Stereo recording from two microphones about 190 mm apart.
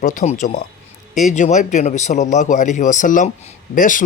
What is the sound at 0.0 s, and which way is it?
A man's voice, 40° left (ahead or behind).